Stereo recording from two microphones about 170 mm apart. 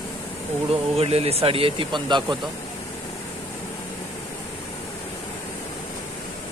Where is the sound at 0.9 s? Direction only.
35° right (ahead or behind).